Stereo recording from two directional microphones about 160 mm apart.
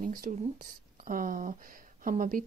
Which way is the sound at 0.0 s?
60° right (ahead or behind).